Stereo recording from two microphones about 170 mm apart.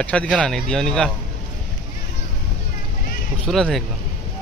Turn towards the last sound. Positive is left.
turn(degrees=0)  # may be behind; listen again after turning